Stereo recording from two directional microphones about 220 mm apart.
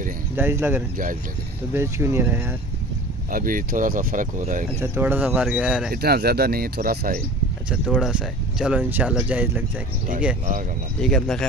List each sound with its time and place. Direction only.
0.4 s speech: 10° right (ahead or behind)
3.3 s speech: 40° right (ahead or behind)
4.7 s speech: 10° right (ahead or behind)
5.9 s speech: 45° right (ahead or behind)
7.7 s speech: centre (ahead or behind)
11.0 s speech: centre (ahead or behind)